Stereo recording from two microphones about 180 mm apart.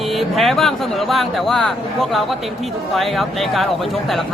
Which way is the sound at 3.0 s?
Centre (ahead or behind).